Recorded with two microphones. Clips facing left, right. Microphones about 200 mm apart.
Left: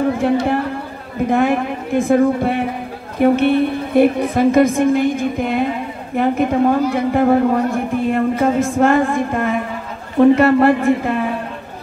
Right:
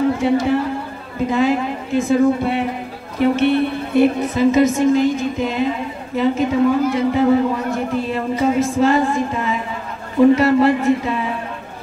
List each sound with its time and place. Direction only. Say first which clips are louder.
0.2 s a woman's voice: even; 60° left (ahead or behind)